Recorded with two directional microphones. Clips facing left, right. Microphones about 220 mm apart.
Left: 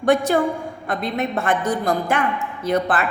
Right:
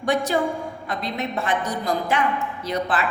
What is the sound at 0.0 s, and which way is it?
A woman's voice, 55° left (ahead or behind).